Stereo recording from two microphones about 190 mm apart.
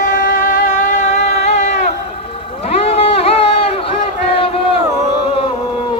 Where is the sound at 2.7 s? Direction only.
30° left (ahead or behind).